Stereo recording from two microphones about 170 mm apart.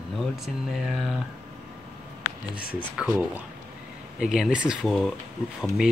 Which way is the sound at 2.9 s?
10° right (ahead or behind).